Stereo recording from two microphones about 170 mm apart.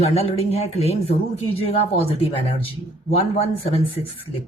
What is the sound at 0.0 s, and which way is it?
A woman's voice, 35° left (ahead or behind).